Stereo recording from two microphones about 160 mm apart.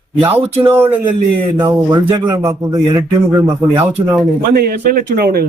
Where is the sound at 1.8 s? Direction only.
30° right (ahead or behind).